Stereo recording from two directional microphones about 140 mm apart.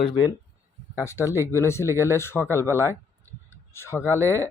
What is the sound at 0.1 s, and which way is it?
Speech, 30° left (ahead or behind).